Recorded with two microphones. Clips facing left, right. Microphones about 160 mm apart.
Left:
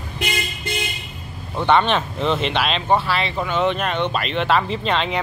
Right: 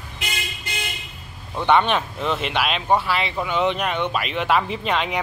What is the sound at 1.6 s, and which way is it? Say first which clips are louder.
Speech: left 1 dB; 10° right (ahead or behind).